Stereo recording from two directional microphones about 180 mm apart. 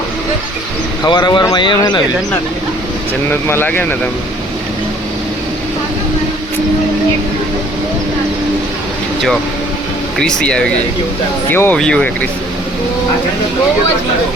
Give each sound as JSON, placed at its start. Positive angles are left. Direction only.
{"t": 1.0, "sound": "speech", "side_deg": 25}
{"t": 3.4, "sound": "speech", "side_deg": 10}
{"t": 10.2, "sound": "speech", "side_deg": 5}